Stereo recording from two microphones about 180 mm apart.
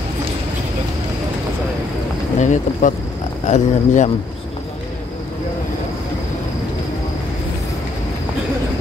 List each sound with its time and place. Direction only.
2.3 s speech: 45° left (ahead or behind)